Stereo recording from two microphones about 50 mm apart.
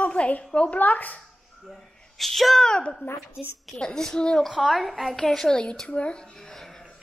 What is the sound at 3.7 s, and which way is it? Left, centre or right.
Speech, centre.